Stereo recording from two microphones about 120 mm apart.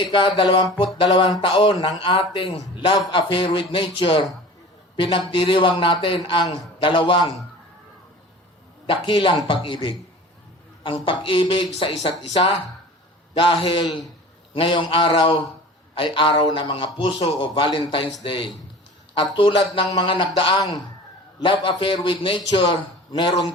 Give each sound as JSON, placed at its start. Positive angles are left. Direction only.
{"t": 0.0, "sound": "a man's voice", "side_deg": 45}
{"t": 8.9, "sound": "a man's voice", "side_deg": 45}
{"t": 13.6, "sound": "a man's voice", "side_deg": 50}